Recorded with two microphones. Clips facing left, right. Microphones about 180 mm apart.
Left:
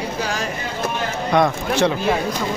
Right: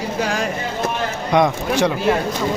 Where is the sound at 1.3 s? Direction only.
15° right (ahead or behind).